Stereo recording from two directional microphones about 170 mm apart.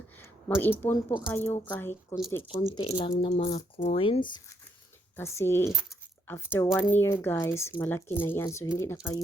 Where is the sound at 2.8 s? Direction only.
30° left (ahead or behind).